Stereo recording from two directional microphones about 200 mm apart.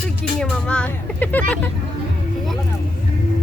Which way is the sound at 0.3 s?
5° left (ahead or behind).